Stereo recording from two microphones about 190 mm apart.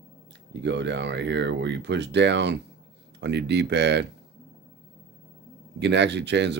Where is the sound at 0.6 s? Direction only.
65° right (ahead or behind).